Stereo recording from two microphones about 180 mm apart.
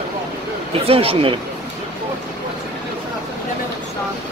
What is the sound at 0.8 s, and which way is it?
Speech, 30° right (ahead or behind).